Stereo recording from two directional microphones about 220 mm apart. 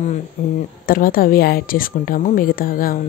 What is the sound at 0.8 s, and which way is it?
Speech, 40° left (ahead or behind).